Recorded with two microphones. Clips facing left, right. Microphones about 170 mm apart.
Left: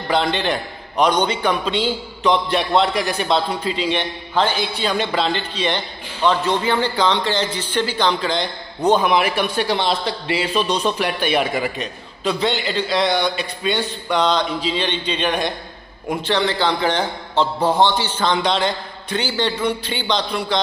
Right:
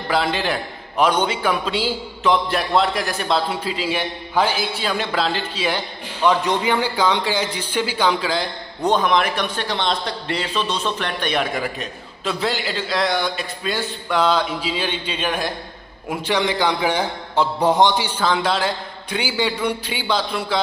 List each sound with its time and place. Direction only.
0.1 s a man's voice: 5° right (ahead or behind)